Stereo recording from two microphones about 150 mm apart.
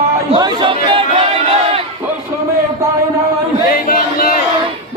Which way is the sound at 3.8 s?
80° left.